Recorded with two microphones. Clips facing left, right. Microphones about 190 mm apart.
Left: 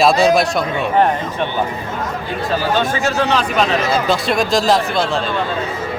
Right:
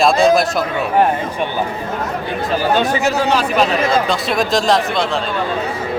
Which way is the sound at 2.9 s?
15° right (ahead or behind).